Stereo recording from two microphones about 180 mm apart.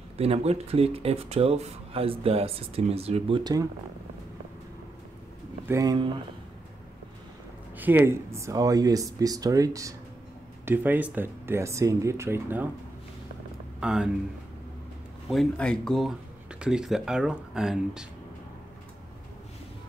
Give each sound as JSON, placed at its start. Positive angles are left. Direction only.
{"t": 0.2, "sound": "speech", "side_deg": -35}
{"t": 5.7, "sound": "speech", "side_deg": -20}
{"t": 7.7, "sound": "speech", "side_deg": -10}
{"t": 13.7, "sound": "speech", "side_deg": -5}
{"t": 15.2, "sound": "speech", "side_deg": 5}